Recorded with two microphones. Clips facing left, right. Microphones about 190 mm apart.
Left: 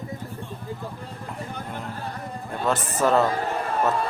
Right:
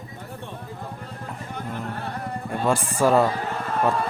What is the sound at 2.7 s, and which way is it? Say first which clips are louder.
Speech: right 2 dB; 10° right (ahead or behind).